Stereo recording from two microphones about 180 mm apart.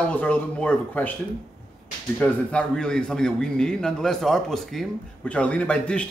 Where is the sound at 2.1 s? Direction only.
5° left (ahead or behind).